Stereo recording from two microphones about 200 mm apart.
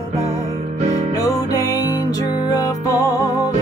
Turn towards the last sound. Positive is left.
turn(degrees=15)  # may be behind; listen again after turning